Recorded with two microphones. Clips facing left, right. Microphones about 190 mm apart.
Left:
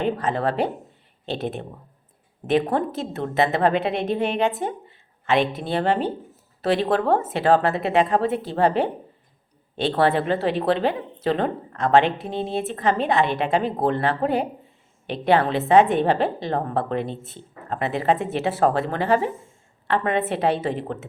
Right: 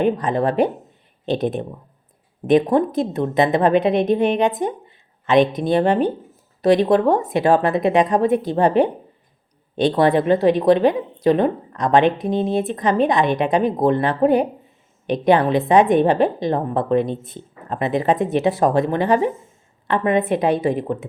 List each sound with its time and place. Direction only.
0.0 s speech: 15° right (ahead or behind)